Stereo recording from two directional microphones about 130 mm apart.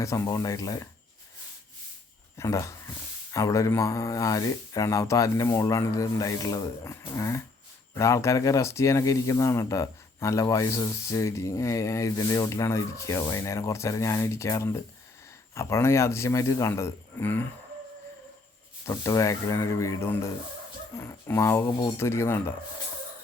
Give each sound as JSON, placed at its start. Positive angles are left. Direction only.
{"t": 0.0, "sound": "speech", "side_deg": 25}
{"t": 2.4, "sound": "speech", "side_deg": 25}
{"t": 18.9, "sound": "speech", "side_deg": 25}